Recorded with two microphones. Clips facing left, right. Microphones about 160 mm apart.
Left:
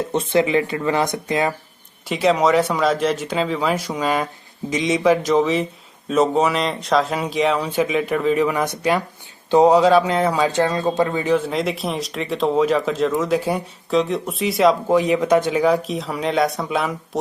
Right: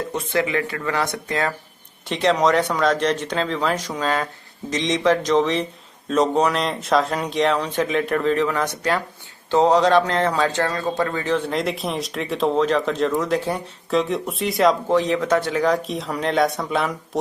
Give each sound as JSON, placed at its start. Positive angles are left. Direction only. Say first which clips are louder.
{"t": 0.1, "sound": "speech", "louder": "left 6 dB", "side_deg": 25}
{"t": 11.4, "sound": "speech", "louder": "left 1 dB", "side_deg": 0}